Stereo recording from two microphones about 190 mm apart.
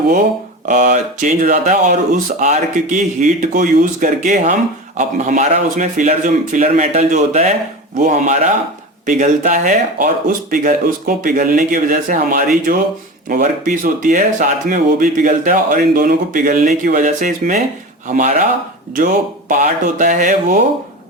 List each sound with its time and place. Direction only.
0.7 s speech: 40° right (ahead or behind)
19.5 s speech: 45° right (ahead or behind)